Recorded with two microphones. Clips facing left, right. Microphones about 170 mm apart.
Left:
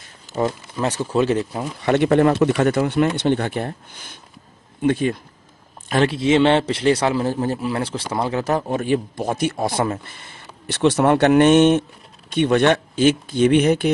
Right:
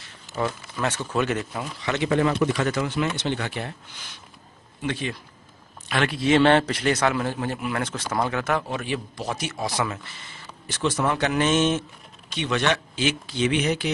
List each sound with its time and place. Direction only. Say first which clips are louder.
0.0 s speech: left 5 dB; 35° left (ahead or behind)
1.8 s speech: left 7 dB; 55° left (ahead or behind)
6.0 s a man's voice: left 2 dB; 25° left (ahead or behind); by 13.9 s 50° left (ahead or behind)